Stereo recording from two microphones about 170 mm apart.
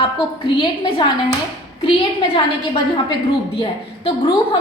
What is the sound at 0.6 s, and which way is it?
Speech, 25° left (ahead or behind).